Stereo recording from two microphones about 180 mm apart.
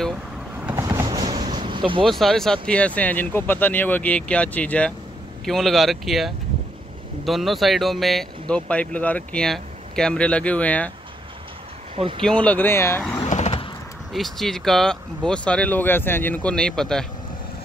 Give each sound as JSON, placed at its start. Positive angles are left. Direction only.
{"t": 0.6, "sound": "vehicle", "side_deg": -10}
{"t": 0.8, "sound": "vehicle", "side_deg": -20}
{"t": 2.0, "sound": "speech", "side_deg": 0}
{"t": 11.9, "sound": "speech", "side_deg": -30}
{"t": 12.2, "sound": "speech", "side_deg": 5}
{"t": 13.3, "sound": "vehicle", "side_deg": 35}
{"t": 14.1, "sound": "speech", "side_deg": 0}